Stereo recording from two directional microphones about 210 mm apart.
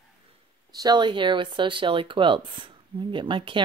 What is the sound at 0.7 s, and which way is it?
Speech, 20° right (ahead or behind).